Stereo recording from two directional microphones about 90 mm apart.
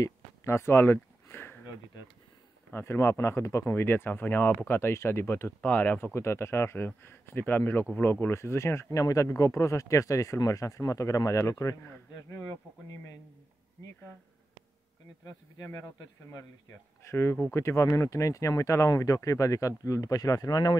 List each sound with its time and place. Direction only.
0.0 s a sound: 30° left (ahead or behind)
2.7 s speech: 30° left (ahead or behind)
6.1 s speech: 30° left (ahead or behind)
15.2 s speech: 50° left (ahead or behind)
17.0 s speech: 30° left (ahead or behind); by 20.7 s 45° left (ahead or behind)